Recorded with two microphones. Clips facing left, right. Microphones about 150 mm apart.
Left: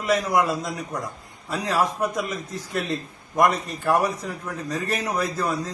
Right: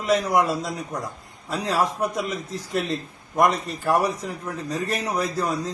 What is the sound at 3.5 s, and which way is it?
A man's voice, centre (ahead or behind).